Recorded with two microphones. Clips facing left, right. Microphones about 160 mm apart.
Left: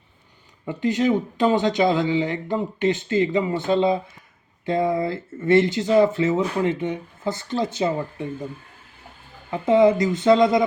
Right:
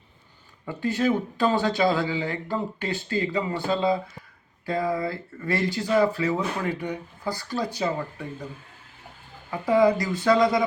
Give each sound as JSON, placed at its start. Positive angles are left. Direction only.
{"t": 0.6, "sound": "speech", "side_deg": 20}
{"t": 9.5, "sound": "speech", "side_deg": 25}